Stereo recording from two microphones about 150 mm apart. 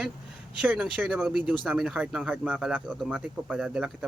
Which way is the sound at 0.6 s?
5° right (ahead or behind).